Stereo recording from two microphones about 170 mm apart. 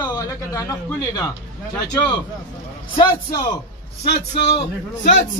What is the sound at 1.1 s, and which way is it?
A man's voice, 20° left (ahead or behind).